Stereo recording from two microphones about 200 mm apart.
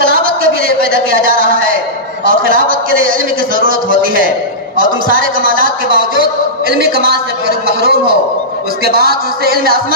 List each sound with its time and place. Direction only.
0.0 s a sound: 45° right (ahead or behind)
2.2 s a man's voice: 45° right (ahead or behind)
7.6 s a man's voice: 50° right (ahead or behind)